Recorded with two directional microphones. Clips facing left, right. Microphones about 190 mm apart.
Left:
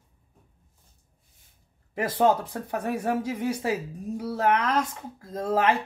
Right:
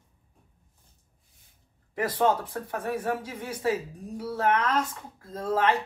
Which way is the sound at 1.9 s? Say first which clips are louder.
Left 2 dB; 25° left (ahead or behind).